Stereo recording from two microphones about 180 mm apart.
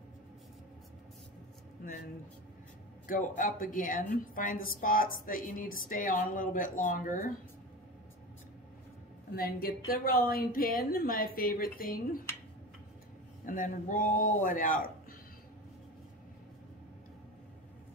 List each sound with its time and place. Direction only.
3.1 s a woman's voice: 50° left (ahead or behind)
9.3 s a woman's voice: 60° left (ahead or behind)
13.5 s a woman's voice: 50° left (ahead or behind)